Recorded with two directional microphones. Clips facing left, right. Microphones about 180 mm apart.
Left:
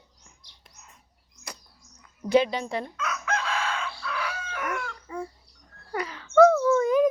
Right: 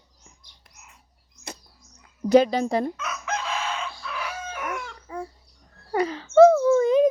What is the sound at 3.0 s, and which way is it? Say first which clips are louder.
Chicken: left 1 dB; 20° right (ahead or behind).